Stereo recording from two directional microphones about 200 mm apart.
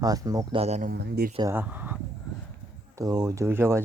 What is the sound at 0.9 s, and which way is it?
Speech, 50° right (ahead or behind).